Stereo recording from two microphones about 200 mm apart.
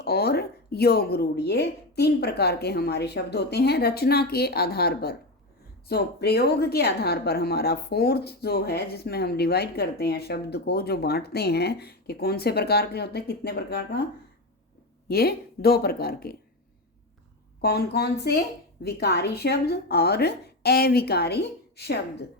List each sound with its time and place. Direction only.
0.0 s speech: 55° left (ahead or behind)
15.0 s speech: 50° left (ahead or behind)
17.6 s speech: 50° left (ahead or behind)